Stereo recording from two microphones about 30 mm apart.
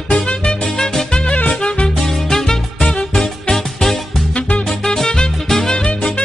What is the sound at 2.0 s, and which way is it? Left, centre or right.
Music, centre.